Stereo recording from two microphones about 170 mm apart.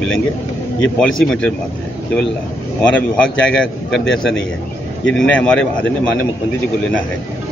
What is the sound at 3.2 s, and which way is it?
A man's voice, 5° left (ahead or behind).